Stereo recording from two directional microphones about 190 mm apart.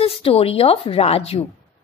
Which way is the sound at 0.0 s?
30° left (ahead or behind).